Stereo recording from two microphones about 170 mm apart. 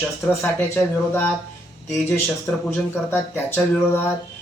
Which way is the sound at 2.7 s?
10° left (ahead or behind).